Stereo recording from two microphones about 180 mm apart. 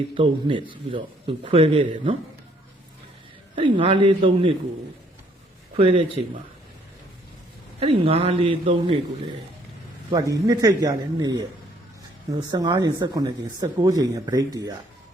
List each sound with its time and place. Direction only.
0.1 s speech: 30° right (ahead or behind)
3.5 s speech: 30° right (ahead or behind)
5.7 s a man's voice: 30° right (ahead or behind)
7.8 s a man's voice: 30° right (ahead or behind)
10.1 s speech: 20° right (ahead or behind)
12.5 s speech: 25° right (ahead or behind)